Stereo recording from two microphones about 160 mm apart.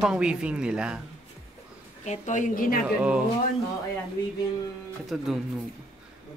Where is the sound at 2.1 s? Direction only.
50° left (ahead or behind).